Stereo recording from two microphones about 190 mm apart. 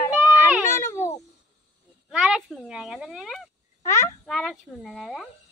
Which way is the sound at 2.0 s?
5° right (ahead or behind).